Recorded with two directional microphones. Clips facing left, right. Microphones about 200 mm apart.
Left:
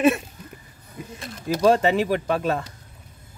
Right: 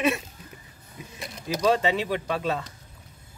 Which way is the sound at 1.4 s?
50° left (ahead or behind).